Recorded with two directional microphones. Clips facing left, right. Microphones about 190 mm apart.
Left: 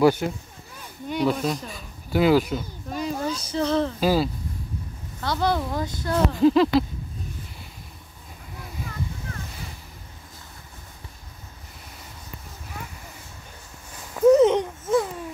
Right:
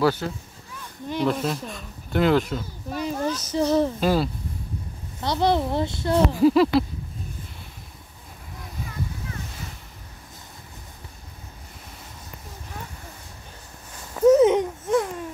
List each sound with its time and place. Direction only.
0.0 s speech: 15° left (ahead or behind)
1.0 s speech: centre (ahead or behind)
2.9 s a sound: centre (ahead or behind)
3.5 s speech: 10° right (ahead or behind)
4.0 s speech: 5° left (ahead or behind)
5.2 s speech: 20° right (ahead or behind)
6.1 s speech: 5° right (ahead or behind)
14.1 s a sound: centre (ahead or behind)